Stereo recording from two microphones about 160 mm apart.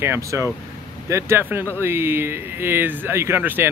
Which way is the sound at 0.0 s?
15° right (ahead or behind).